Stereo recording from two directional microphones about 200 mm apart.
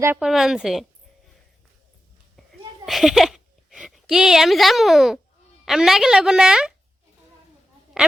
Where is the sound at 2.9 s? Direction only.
Centre (ahead or behind).